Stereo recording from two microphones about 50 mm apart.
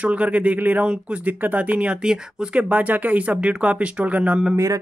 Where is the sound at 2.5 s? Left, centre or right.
Right.